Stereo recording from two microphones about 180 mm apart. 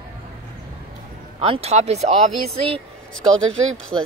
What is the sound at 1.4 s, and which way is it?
Speech, 30° right (ahead or behind).